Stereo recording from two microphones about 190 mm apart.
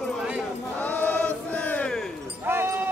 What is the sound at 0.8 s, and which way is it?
Chant, 10° left (ahead or behind).